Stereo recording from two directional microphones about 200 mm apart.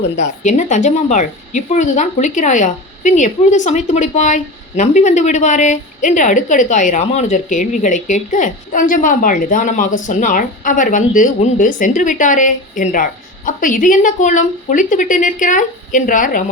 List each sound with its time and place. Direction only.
0.2 s a woman's voice: 35° left (ahead or behind)